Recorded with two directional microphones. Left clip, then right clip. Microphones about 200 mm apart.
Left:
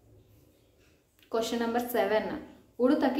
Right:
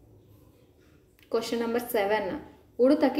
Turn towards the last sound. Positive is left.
turn(degrees=-5)  # may be behind; listen again after turning